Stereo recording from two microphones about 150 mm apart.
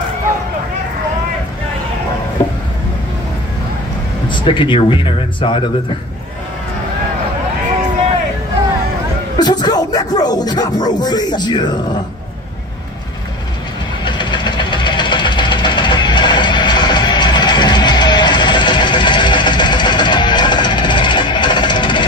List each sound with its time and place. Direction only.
4.3 s speech: 35° left (ahead or behind)
9.4 s a sound: 25° left (ahead or behind)
14.0 s engine knocking: 30° left (ahead or behind)